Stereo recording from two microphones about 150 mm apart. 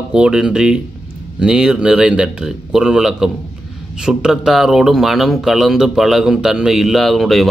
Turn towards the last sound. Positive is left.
turn(degrees=0)  # may be behind; listen again after turning